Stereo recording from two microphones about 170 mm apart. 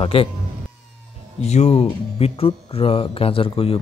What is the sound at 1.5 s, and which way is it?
Speech, 40° left (ahead or behind).